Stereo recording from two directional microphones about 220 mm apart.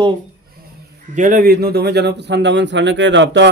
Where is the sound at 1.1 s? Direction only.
35° right (ahead or behind); by 3.4 s 55° right (ahead or behind).